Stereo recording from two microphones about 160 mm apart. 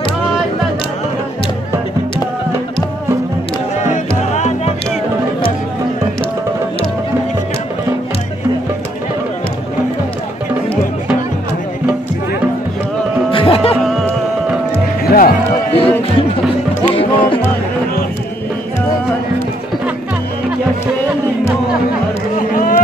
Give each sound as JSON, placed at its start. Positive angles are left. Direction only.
{"t": 13.3, "sound": "music", "side_deg": 35}
{"t": 13.8, "sound": "music", "side_deg": 0}
{"t": 15.0, "sound": "music", "side_deg": 65}
{"t": 15.7, "sound": "music", "side_deg": 35}
{"t": 22.5, "sound": "a sound", "side_deg": 60}